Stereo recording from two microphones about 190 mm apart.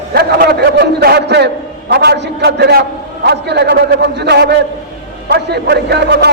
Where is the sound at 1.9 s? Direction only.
60° right (ahead or behind).